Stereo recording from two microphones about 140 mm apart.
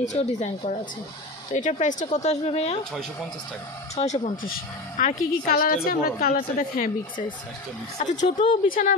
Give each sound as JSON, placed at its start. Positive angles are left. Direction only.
{"t": 0.0, "sound": "speech", "side_deg": 55}
{"t": 2.9, "sound": "speech", "side_deg": 5}
{"t": 3.9, "sound": "speech", "side_deg": 55}
{"t": 4.4, "sound": "speech", "side_deg": 80}
{"t": 8.0, "sound": "speech", "side_deg": 60}
{"t": 8.6, "sound": "speech", "side_deg": 85}